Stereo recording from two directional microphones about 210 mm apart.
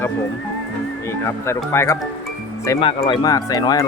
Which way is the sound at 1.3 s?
15° left (ahead or behind).